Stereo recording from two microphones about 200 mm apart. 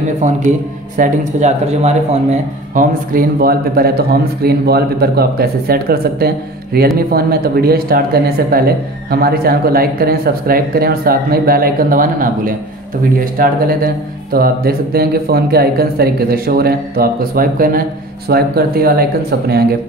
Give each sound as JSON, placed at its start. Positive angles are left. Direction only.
{"t": 0.2, "sound": "speech", "side_deg": -35}